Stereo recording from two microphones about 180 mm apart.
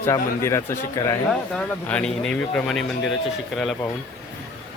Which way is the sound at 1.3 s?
5° left (ahead or behind).